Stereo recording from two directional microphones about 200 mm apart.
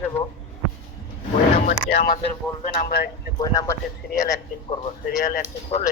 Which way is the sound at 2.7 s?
50° left (ahead or behind).